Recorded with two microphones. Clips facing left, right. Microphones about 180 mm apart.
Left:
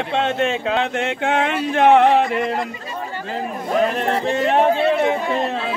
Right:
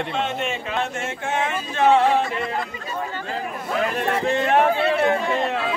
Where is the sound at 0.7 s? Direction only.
75° left (ahead or behind).